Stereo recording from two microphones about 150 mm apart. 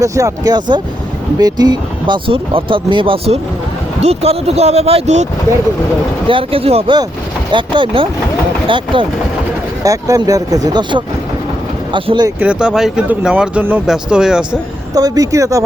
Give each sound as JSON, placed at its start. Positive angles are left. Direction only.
{"t": 0.0, "sound": "speech", "side_deg": -20}
{"t": 6.2, "sound": "speech", "side_deg": -35}
{"t": 9.8, "sound": "speech", "side_deg": -20}
{"t": 12.4, "sound": "speech", "side_deg": -5}
{"t": 14.9, "sound": "speech", "side_deg": -25}